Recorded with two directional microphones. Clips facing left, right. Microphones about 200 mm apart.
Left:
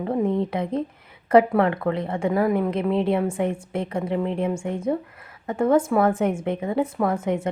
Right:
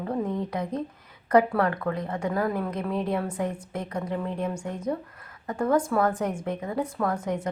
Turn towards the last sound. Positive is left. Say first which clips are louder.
# left 4 dB
turn(degrees=25)  # may be behind; listen again after turning